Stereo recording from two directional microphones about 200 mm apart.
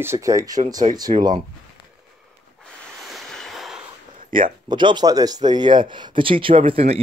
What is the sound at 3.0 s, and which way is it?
Waves, centre (ahead or behind).